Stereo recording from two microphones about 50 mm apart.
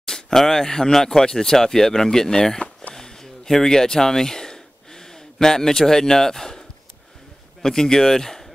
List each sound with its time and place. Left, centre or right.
0.0 s speech: centre
2.9 s a sound: centre
7.6 s speech: centre